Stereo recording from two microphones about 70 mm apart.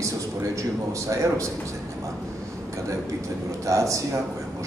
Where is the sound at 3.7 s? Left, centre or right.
Right.